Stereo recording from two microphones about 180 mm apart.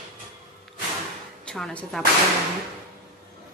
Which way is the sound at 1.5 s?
5° left (ahead or behind).